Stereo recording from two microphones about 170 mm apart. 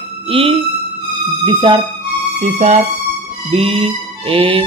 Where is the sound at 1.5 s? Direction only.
30° right (ahead or behind).